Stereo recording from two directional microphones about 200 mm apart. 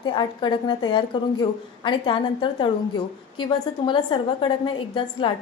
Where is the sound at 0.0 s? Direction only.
20° left (ahead or behind).